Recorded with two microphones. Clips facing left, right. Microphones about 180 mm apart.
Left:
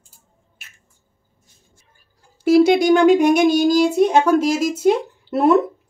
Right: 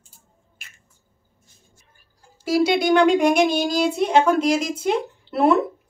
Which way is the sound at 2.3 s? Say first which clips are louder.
Left 6 dB; 55° left (ahead or behind).